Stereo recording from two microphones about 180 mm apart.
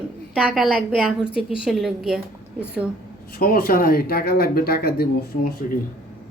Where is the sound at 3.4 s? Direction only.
55° left (ahead or behind).